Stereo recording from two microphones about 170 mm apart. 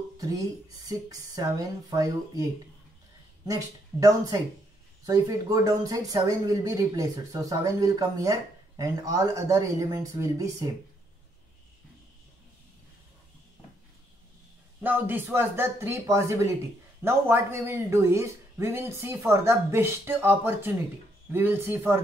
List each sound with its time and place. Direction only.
0.2 s speech: 20° right (ahead or behind)
14.8 s speech: 10° right (ahead or behind)